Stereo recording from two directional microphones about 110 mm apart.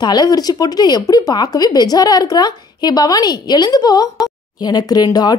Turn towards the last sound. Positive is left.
turn(degrees=35)  # may be behind; listen again after turning